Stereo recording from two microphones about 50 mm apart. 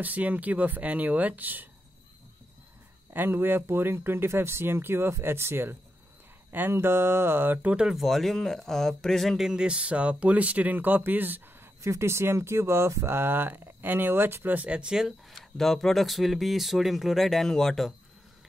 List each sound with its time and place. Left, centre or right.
0.0 s speech: right
3.1 s speech: right
7.8 s speech: centre
9.4 s speech: centre; by 11.4 s right
11.8 s speech: right; by 15.1 s centre
15.2 s speech: centre